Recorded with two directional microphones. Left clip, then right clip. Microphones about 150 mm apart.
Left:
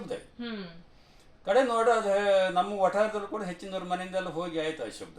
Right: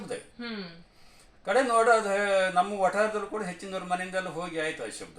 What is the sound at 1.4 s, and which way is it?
A man's voice, 20° right (ahead or behind).